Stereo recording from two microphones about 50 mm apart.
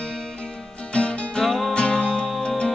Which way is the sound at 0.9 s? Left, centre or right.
Left.